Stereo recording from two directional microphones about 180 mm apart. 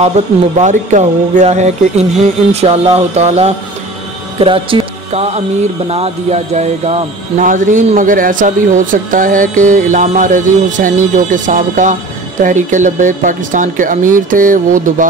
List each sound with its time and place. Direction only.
0.2 s speech: 40° right (ahead or behind)